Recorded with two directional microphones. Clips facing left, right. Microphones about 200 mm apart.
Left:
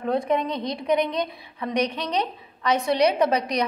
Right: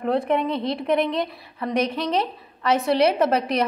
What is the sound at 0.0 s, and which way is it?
A woman's voice, 5° right (ahead or behind).